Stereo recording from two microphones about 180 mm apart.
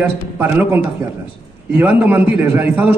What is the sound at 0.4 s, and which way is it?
A man's voice, 10° right (ahead or behind).